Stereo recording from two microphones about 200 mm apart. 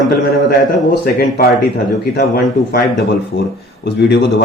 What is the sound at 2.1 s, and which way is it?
Speech, 50° left (ahead or behind).